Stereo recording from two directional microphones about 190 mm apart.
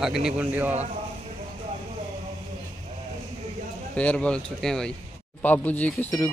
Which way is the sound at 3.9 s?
5° left (ahead or behind).